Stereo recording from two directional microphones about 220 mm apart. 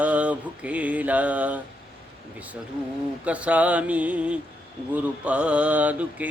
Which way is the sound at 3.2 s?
5° right (ahead or behind).